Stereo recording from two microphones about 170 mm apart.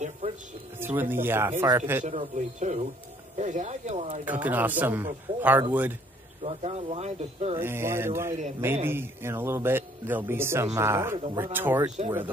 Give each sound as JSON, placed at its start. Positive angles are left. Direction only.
{"t": 0.2, "sound": "a sound", "side_deg": -40}
{"t": 0.7, "sound": "speech", "side_deg": -10}
{"t": 2.0, "sound": "speech", "side_deg": -45}
{"t": 4.2, "sound": "speech", "side_deg": -10}
{"t": 6.4, "sound": "speech", "side_deg": -40}
{"t": 7.5, "sound": "speech", "side_deg": -15}